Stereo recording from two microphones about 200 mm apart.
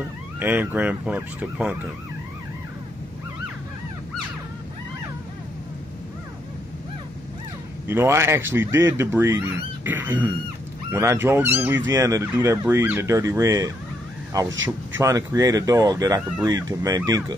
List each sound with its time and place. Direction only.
0.4 s speech: 10° right (ahead or behind)
7.9 s speech: 10° right (ahead or behind)
14.5 s speech: 70° right (ahead or behind)
15.0 s speech: 15° right (ahead or behind)